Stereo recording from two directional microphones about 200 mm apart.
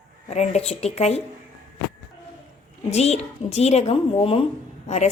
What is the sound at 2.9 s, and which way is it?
A woman's voice, 30° left (ahead or behind).